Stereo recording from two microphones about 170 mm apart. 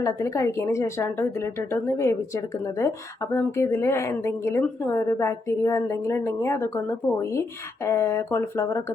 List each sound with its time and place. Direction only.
0.0 s a woman's voice: 20° left (ahead or behind)